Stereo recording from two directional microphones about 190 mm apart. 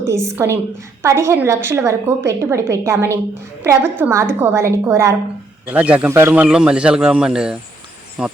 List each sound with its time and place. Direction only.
0.1 s a woman's voice: 15° right (ahead or behind)